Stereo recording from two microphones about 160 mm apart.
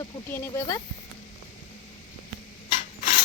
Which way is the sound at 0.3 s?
20° left (ahead or behind).